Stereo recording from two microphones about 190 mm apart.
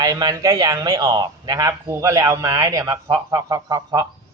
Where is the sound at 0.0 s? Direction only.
20° right (ahead or behind).